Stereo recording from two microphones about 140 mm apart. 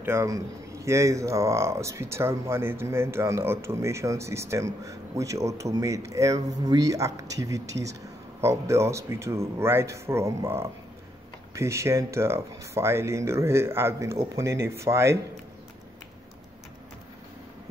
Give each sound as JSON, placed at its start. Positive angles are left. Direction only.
{"t": 0.0, "sound": "speech", "side_deg": -20}